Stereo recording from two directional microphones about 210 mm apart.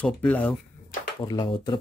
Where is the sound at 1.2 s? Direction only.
20° left (ahead or behind).